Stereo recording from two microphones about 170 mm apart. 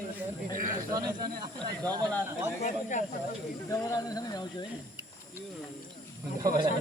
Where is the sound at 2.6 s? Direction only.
45° left (ahead or behind).